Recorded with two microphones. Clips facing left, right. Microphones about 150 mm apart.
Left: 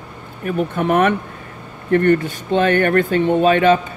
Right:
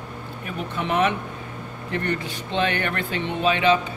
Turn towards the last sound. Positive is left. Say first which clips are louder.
# left 7 dB
turn(degrees=50)  # may be behind; listen again after turning